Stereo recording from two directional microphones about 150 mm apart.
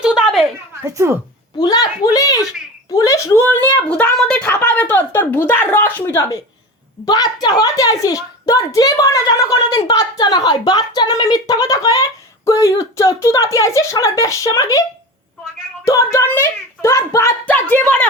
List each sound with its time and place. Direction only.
0.0 s a sound: 5° right (ahead or behind)
0.9 s speech: 15° right (ahead or behind)
1.5 s a woman's voice: 25° left (ahead or behind)
2.9 s a sound: 25° left (ahead or behind)
7.0 s a woman's voice: 25° left (ahead or behind)
15.8 s speech: 20° left (ahead or behind)